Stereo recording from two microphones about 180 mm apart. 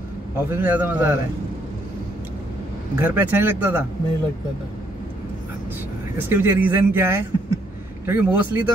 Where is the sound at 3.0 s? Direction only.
10° right (ahead or behind).